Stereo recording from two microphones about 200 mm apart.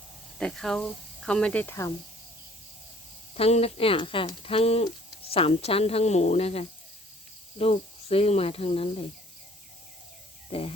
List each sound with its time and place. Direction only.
0.3 s speech: 5° left (ahead or behind)
3.3 s a woman's voice: 30° left (ahead or behind)
10.5 s speech: 30° left (ahead or behind)